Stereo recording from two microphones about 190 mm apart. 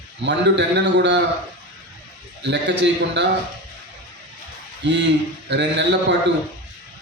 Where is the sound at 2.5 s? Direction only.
65° right (ahead or behind).